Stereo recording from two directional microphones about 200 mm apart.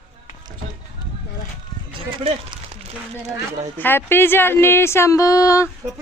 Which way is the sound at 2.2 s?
25° right (ahead or behind).